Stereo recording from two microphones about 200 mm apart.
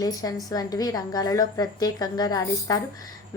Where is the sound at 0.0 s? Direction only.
20° left (ahead or behind).